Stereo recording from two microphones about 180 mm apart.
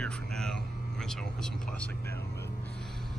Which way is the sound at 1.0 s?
5° left (ahead or behind).